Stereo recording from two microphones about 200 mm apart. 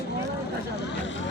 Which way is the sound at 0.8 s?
65° left (ahead or behind).